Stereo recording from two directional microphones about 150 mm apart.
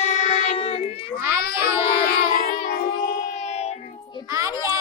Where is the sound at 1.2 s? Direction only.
15° right (ahead or behind).